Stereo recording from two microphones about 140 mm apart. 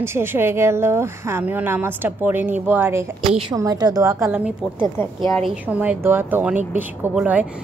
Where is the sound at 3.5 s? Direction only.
25° right (ahead or behind).